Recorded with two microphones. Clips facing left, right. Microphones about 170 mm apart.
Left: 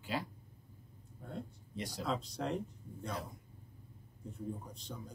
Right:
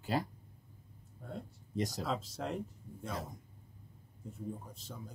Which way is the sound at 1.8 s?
45° right (ahead or behind).